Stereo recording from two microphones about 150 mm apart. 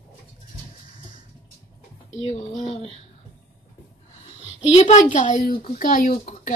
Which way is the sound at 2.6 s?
30° left (ahead or behind).